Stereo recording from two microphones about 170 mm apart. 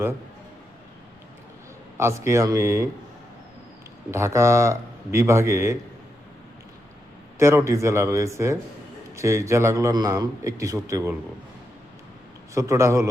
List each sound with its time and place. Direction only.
2.0 s a man's voice: 15° right (ahead or behind)
4.1 s a man's voice: 15° right (ahead or behind)
7.3 s a man's voice: 15° right (ahead or behind)
12.5 s a man's voice: 15° right (ahead or behind)